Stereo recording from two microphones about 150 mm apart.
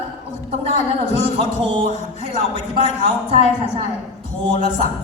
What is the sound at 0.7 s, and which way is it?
A woman's voice, 50° left (ahead or behind).